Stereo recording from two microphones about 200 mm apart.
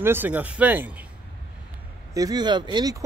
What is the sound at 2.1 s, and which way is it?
Speech, 20° right (ahead or behind).